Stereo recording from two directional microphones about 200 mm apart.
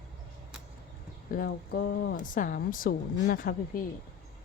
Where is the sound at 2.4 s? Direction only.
45° left (ahead or behind).